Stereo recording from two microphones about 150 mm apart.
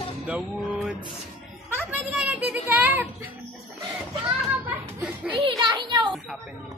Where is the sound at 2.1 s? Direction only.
10° right (ahead or behind).